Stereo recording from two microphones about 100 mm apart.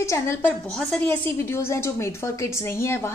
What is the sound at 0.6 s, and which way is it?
Speech, 5° left (ahead or behind).